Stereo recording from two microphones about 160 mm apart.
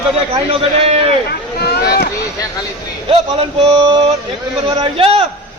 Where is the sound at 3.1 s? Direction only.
35° right (ahead or behind).